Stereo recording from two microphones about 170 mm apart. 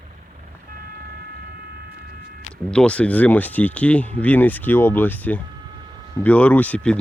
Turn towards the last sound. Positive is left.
turn(degrees=5)  # may be behind; listen again after turning